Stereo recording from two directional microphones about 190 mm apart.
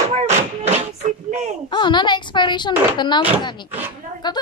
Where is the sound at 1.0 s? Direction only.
40° right (ahead or behind).